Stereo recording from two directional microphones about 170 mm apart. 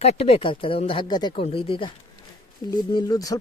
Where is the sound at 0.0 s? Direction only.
35° left (ahead or behind).